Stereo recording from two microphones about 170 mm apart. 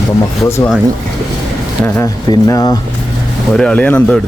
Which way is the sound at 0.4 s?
15° left (ahead or behind).